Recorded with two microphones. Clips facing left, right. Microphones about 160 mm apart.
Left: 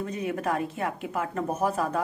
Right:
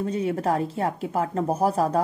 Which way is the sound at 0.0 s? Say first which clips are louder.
Right 5 dB; 30° right (ahead or behind).